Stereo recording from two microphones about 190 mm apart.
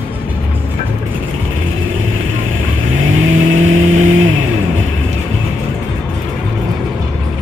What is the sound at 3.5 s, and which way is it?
Vehicle, 90° right.